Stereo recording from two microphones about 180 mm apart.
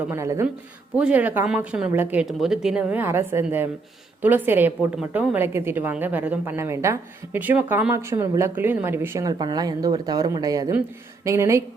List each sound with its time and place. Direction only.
0.1 s a woman's voice: 15° right (ahead or behind)